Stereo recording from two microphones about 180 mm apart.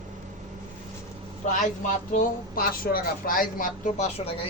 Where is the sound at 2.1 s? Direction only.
50° left (ahead or behind).